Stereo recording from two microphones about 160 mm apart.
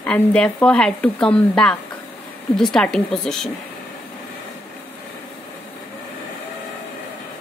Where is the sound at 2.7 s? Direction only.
5° left (ahead or behind).